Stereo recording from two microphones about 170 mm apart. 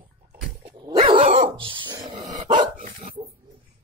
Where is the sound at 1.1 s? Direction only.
35° right (ahead or behind); by 3.1 s 50° right (ahead or behind).